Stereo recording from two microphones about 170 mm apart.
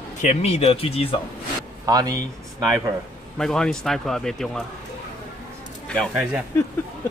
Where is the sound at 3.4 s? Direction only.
5° left (ahead or behind).